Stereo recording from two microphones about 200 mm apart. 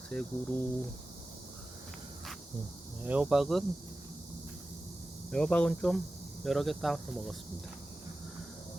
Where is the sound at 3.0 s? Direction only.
5° right (ahead or behind).